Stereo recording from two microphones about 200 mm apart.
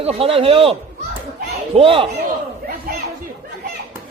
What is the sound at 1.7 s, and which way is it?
Speech, 30° right (ahead or behind).